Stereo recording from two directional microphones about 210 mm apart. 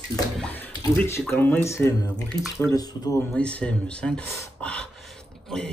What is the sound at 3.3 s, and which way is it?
Speech, 5° left (ahead or behind).